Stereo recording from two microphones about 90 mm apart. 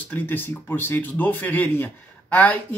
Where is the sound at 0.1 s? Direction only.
20° left (ahead or behind).